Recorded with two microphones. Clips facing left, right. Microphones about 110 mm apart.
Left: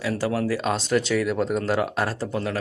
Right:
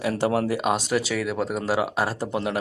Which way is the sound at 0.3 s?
20° right (ahead or behind).